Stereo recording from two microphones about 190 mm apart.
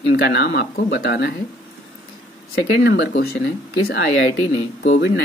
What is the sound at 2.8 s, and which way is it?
Speech, 60° left (ahead or behind).